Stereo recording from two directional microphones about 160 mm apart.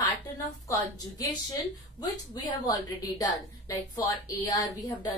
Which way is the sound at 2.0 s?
25° left (ahead or behind).